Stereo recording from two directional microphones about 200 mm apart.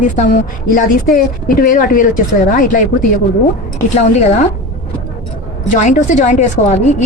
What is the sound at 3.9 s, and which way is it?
Speech, 35° left (ahead or behind).